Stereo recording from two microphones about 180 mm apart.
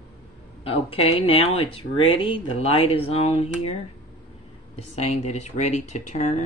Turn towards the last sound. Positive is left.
turn(degrees=40)  # may be behind; listen again after turning